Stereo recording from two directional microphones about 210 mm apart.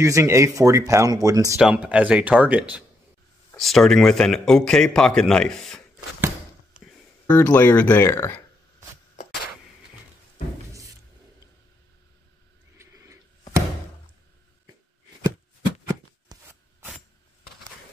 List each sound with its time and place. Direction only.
0.0 s speech: 15° right (ahead or behind)
1.6 s speech: 5° right (ahead or behind)
7.2 s speech: 5° left (ahead or behind)
9.1 s a sound: 40° left (ahead or behind)
15.9 s shuffling cards: 15° right (ahead or behind)